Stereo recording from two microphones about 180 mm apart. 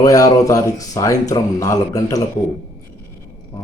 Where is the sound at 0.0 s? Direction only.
20° left (ahead or behind).